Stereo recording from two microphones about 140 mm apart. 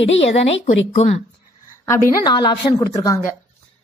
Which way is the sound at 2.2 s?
30° left (ahead or behind).